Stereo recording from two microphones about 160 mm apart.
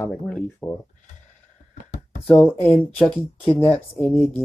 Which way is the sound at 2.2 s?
15° left (ahead or behind).